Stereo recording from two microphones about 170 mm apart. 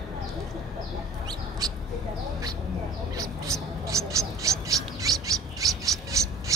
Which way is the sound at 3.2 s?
20° right (ahead or behind).